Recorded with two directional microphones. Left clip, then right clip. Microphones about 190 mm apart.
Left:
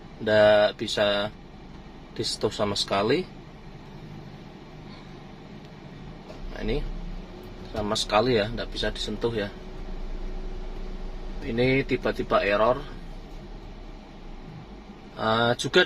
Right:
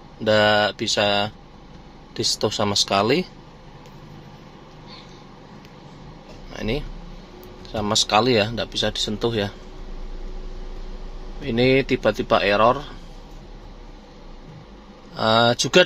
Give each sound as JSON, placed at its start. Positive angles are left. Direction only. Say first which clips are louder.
{"t": 0.2, "sound": "speech", "louder": "right 1 dB", "side_deg": -35}
{"t": 7.7, "sound": "speech", "louder": "right 5 dB", "side_deg": -35}
{"t": 11.5, "sound": "speech", "louder": "right 5 dB", "side_deg": -45}
{"t": 15.1, "sound": "speech", "louder": "right 6 dB", "side_deg": -35}